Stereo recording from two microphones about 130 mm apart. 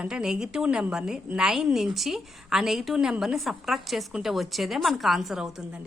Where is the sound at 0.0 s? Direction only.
5° right (ahead or behind).